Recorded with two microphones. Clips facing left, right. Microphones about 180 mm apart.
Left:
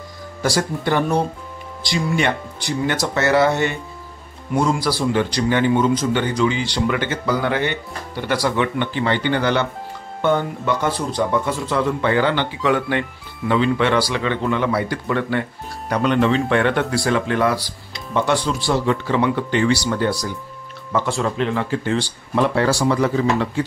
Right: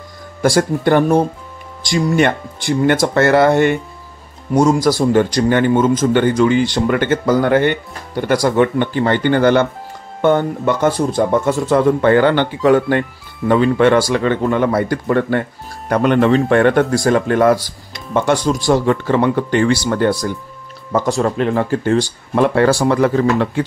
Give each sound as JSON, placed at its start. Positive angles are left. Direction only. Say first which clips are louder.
{"t": 0.4, "sound": "a man's voice", "louder": "right 7 dB", "side_deg": -50}
{"t": 20.9, "sound": "a man's voice", "louder": "right 5 dB", "side_deg": -40}